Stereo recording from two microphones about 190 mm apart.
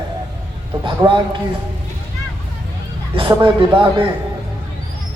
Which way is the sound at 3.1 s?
25° right (ahead or behind).